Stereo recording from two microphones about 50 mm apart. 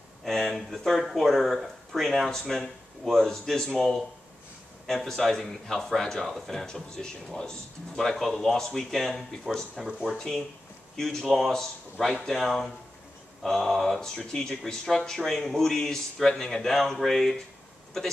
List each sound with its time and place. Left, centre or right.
0.2 s speech: centre
9.8 s speech: centre
10.1 s speech: centre
14.3 s speech: centre